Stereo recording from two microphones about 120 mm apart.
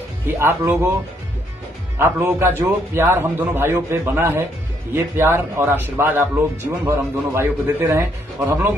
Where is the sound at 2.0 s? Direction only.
20° right (ahead or behind).